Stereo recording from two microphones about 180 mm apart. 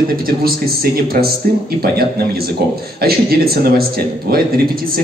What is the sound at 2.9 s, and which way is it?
Speech, 60° right (ahead or behind).